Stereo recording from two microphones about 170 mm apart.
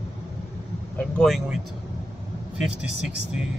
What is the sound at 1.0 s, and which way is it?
Speech, 5° left (ahead or behind).